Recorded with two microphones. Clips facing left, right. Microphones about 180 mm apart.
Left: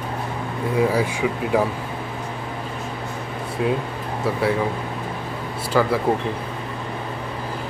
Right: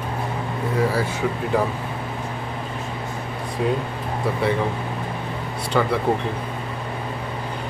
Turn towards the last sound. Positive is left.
turn(degrees=0)  # may be behind; listen again after turning